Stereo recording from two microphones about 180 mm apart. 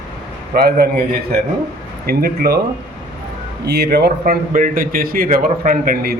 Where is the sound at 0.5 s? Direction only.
60° right (ahead or behind).